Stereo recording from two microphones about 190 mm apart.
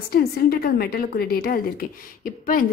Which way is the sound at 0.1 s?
55° left (ahead or behind).